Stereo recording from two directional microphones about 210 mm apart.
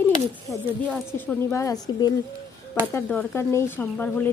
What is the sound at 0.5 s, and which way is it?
Speech, 5° left (ahead or behind).